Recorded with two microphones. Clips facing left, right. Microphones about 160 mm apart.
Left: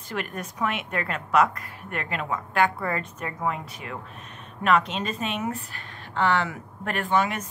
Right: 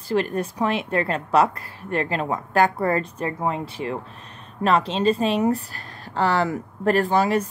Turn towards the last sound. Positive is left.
turn(degrees=-35)  # may be behind; listen again after turning